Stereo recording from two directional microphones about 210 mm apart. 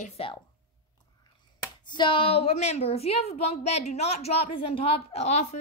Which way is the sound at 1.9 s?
20° left (ahead or behind).